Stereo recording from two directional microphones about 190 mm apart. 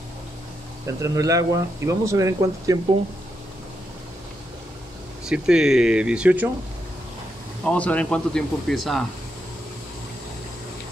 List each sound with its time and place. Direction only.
0.8 s speech: 15° right (ahead or behind)
5.3 s speech: 5° right (ahead or behind)
7.6 s speech: 5° left (ahead or behind)